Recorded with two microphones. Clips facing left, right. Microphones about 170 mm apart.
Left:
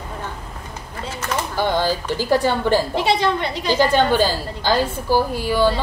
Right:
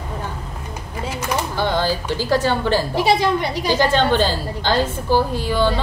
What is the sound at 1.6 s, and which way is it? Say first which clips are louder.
A woman's voice: left 2 dB; 15° left (ahead or behind).